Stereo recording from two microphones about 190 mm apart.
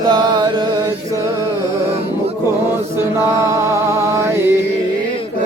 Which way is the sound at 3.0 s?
15° right (ahead or behind).